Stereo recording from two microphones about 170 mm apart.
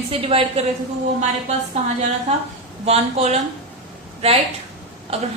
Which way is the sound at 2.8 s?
40° right (ahead or behind).